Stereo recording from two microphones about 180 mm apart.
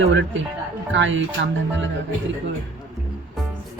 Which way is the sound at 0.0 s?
90° right.